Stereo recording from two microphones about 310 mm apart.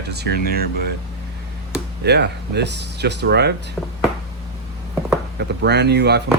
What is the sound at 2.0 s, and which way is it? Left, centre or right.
Speech, right.